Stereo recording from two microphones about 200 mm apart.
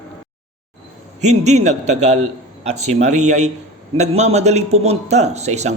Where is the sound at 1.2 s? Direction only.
35° right (ahead or behind).